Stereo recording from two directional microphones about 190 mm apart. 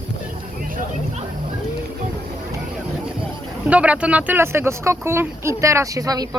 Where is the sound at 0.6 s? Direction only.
45° right (ahead or behind).